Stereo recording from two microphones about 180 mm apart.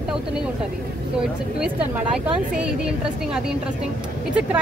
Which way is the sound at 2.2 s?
5° right (ahead or behind).